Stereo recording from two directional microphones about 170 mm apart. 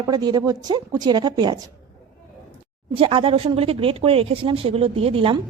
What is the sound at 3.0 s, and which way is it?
A woman's voice, 30° right (ahead or behind).